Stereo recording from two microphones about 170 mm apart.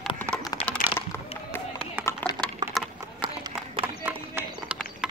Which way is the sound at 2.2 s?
10° left (ahead or behind).